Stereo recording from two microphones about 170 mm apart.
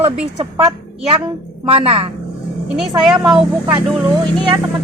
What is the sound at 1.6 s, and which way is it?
Speech, 35° right (ahead or behind).